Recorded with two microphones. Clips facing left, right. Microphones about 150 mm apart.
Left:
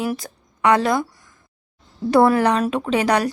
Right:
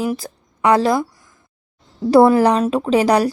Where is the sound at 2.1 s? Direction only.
30° right (ahead or behind).